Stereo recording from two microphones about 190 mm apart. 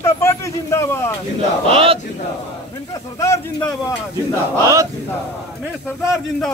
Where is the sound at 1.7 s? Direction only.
30° right (ahead or behind).